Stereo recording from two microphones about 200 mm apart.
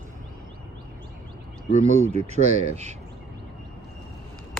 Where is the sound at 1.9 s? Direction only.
35° right (ahead or behind).